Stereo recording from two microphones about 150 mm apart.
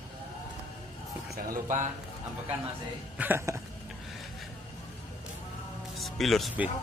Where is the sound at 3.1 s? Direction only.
15° right (ahead or behind).